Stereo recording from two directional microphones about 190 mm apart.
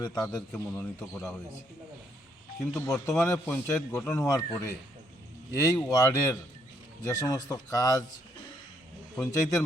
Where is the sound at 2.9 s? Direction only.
15° left (ahead or behind).